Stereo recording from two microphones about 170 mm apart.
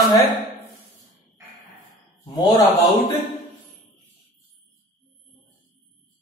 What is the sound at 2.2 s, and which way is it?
Speech, 20° left (ahead or behind).